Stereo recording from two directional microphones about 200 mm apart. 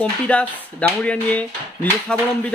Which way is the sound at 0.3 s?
5° left (ahead or behind).